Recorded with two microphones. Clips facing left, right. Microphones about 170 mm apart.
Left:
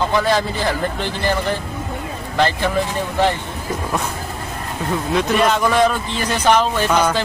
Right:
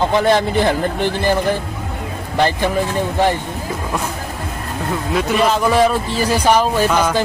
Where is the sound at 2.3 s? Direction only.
15° right (ahead or behind).